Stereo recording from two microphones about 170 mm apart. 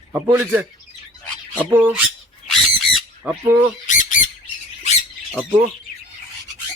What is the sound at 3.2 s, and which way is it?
Speech, 15° right (ahead or behind).